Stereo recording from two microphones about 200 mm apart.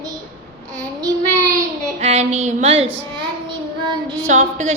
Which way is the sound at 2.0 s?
30° right (ahead or behind).